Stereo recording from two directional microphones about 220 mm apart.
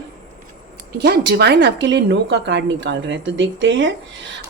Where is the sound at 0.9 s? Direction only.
50° right (ahead or behind).